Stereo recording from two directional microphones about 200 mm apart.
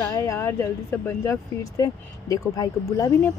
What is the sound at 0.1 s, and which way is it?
Speech, 15° left (ahead or behind).